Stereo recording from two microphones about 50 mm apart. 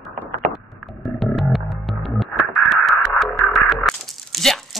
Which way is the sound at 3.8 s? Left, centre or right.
Centre.